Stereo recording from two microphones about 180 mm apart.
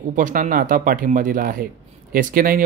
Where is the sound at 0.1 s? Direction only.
45° right (ahead or behind).